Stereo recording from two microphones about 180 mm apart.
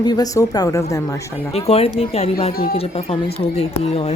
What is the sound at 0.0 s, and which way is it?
Speech, 20° left (ahead or behind).